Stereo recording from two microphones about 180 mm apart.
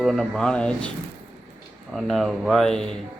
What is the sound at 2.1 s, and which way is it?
Speech, centre (ahead or behind).